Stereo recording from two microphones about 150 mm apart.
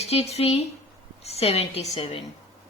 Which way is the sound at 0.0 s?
45° left (ahead or behind).